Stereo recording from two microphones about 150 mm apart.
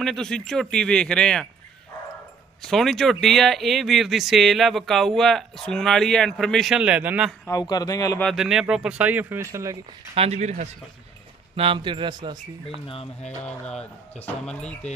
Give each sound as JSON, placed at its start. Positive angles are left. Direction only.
{"t": 0.0, "sound": "speech", "side_deg": 5}
{"t": 2.6, "sound": "speech", "side_deg": 0}
{"t": 7.4, "sound": "speech", "side_deg": 25}
{"t": 8.2, "sound": "speech", "side_deg": 0}
{"t": 10.1, "sound": "speech", "side_deg": -45}
{"t": 11.5, "sound": "a man's voice", "side_deg": -35}
{"t": 12.8, "sound": "speech", "side_deg": 45}
{"t": 13.4, "sound": "speech", "side_deg": 5}